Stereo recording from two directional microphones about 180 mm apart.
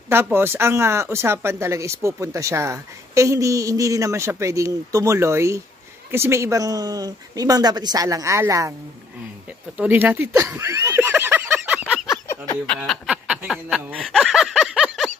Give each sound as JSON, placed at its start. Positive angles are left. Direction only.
{"t": 0.1, "sound": "speech", "side_deg": -15}
{"t": 9.8, "sound": "snicker", "side_deg": -10}
{"t": 12.1, "sound": "a sound", "side_deg": 20}
{"t": 12.6, "sound": "speech", "side_deg": 0}